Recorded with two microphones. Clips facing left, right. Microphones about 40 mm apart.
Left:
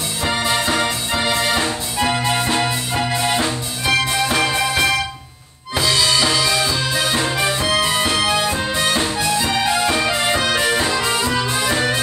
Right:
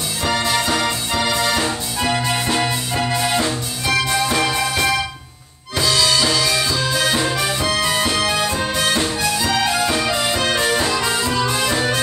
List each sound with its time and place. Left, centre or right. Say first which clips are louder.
0.2 s music: even; centre